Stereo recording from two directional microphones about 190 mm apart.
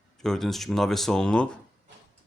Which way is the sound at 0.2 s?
Centre (ahead or behind).